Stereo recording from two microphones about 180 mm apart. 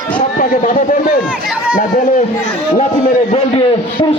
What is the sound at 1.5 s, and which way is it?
Speech, 5° right (ahead or behind).